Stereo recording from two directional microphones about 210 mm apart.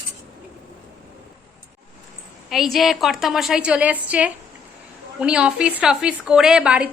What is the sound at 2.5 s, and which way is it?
A woman's voice, centre (ahead or behind).